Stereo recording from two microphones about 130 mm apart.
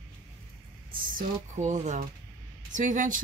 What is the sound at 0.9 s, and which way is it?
Speech, 90° right.